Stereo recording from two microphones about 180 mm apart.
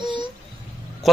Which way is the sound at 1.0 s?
Centre (ahead or behind).